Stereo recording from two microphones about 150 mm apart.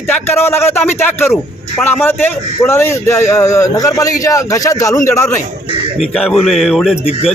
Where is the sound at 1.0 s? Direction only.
15° left (ahead or behind).